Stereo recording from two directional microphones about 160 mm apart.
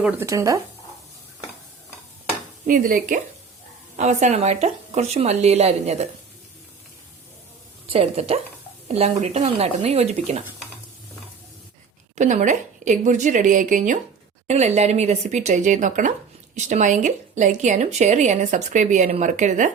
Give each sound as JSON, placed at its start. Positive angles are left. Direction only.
{"t": 0.0, "sound": "speech", "side_deg": -20}
{"t": 2.6, "sound": "speech", "side_deg": -60}
{"t": 3.9, "sound": "a woman's voice", "side_deg": -50}
{"t": 7.9, "sound": "a woman's voice", "side_deg": -40}
{"t": 12.1, "sound": "a woman's voice", "side_deg": -50}
{"t": 14.4, "sound": "a woman's voice", "side_deg": -45}